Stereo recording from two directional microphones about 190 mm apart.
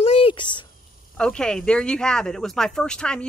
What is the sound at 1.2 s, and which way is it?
Speech, 5° left (ahead or behind).